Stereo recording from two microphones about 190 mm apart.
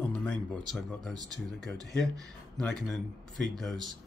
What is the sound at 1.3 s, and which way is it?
Speech, centre (ahead or behind).